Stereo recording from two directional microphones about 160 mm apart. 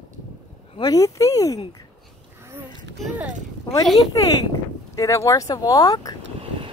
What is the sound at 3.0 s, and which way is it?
Speech, 5° right (ahead or behind).